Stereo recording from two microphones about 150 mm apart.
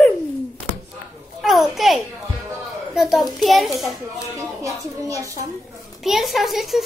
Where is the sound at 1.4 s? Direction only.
Centre (ahead or behind).